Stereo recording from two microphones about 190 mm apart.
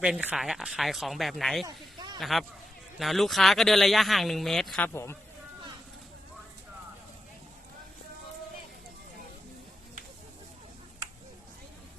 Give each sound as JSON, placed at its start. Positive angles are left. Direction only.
{"t": 0.0, "sound": "speech", "side_deg": -5}
{"t": 1.6, "sound": "a sound", "side_deg": -20}
{"t": 2.1, "sound": "speech", "side_deg": 0}
{"t": 4.9, "sound": "a man's voice", "side_deg": 15}